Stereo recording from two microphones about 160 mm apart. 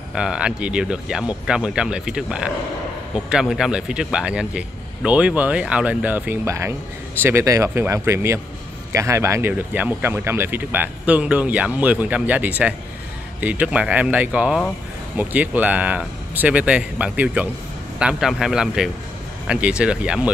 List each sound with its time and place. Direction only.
0.1 s speech: 5° right (ahead or behind)